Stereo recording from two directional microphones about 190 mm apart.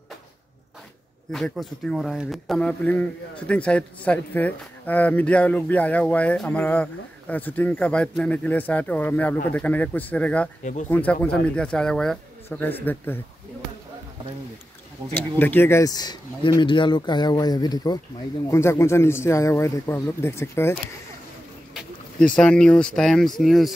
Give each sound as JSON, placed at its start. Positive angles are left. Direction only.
{"t": 1.3, "sound": "speech", "side_deg": 0}
{"t": 10.6, "sound": "speech", "side_deg": 40}
{"t": 10.9, "sound": "speech", "side_deg": 10}
{"t": 15.1, "sound": "speech", "side_deg": 10}
{"t": 21.7, "sound": "speech", "side_deg": 5}